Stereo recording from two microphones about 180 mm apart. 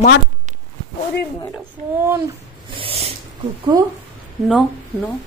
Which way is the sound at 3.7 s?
20° right (ahead or behind).